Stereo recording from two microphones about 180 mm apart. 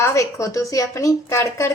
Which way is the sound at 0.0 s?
15° left (ahead or behind).